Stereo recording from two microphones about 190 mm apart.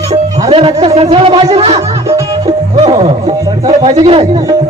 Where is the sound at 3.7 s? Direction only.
30° right (ahead or behind).